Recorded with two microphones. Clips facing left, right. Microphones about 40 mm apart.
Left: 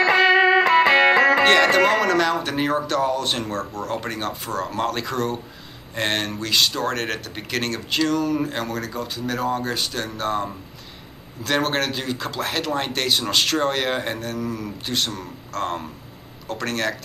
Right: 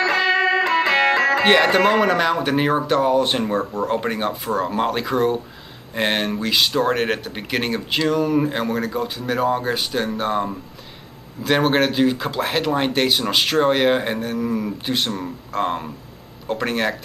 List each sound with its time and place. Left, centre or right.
0.0 s music: centre
1.4 s speech: centre